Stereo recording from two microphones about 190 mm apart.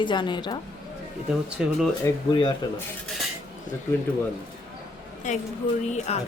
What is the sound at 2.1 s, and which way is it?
Speech, 15° left (ahead or behind).